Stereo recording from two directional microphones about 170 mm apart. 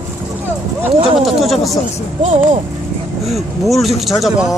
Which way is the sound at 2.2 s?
45° right (ahead or behind).